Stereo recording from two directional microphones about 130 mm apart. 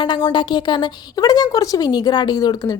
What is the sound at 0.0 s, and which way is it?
A woman's voice, 40° left (ahead or behind).